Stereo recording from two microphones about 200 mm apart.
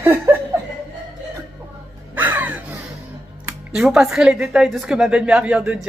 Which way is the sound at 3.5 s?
5° right (ahead or behind).